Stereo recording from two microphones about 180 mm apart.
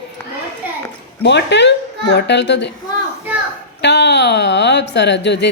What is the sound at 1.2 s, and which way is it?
Speech, 75° left (ahead or behind).